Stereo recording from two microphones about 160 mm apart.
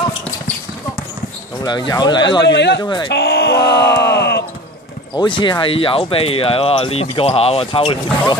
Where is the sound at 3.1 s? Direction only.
90° left.